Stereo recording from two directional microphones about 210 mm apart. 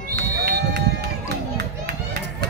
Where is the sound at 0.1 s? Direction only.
50° right (ahead or behind).